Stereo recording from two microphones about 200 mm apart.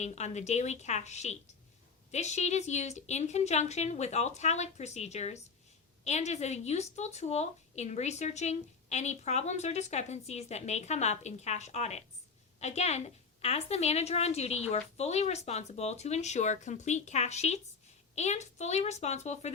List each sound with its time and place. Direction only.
0.0 s a woman's voice: 35° left (ahead or behind)